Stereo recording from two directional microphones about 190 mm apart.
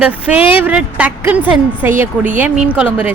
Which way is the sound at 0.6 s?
5° right (ahead or behind).